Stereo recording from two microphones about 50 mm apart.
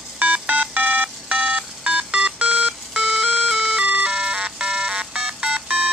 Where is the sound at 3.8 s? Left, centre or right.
Right.